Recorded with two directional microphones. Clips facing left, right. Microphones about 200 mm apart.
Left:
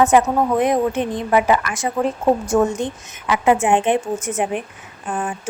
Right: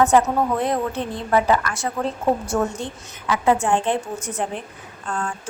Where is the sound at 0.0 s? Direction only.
15° left (ahead or behind).